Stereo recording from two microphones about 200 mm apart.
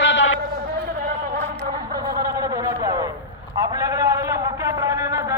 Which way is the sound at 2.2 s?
15° right (ahead or behind).